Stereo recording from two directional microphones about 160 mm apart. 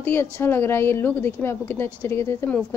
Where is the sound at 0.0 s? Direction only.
15° left (ahead or behind).